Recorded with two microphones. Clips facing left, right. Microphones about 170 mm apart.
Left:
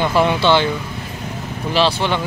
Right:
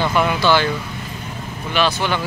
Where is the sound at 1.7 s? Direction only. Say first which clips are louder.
Left 2 dB; 30° left (ahead or behind).